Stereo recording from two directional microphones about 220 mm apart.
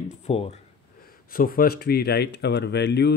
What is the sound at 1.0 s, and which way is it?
Speech, 40° left (ahead or behind).